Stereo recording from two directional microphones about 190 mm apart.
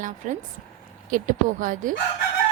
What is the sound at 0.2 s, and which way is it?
A woman's voice, 40° right (ahead or behind).